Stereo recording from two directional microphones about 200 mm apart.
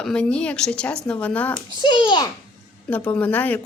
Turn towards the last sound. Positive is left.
turn(degrees=10)  # may be behind; listen again after turning